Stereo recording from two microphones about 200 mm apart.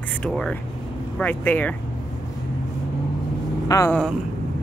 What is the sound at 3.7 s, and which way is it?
Speech, 15° left (ahead or behind).